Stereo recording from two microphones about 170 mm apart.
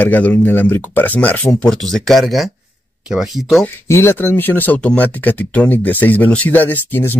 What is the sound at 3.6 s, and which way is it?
Speech, 15° left (ahead or behind).